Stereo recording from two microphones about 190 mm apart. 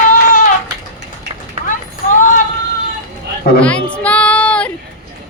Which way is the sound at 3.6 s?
5° left (ahead or behind).